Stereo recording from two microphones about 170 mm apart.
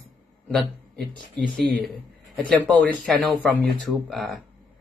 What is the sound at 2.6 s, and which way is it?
Speech, 10° left (ahead or behind).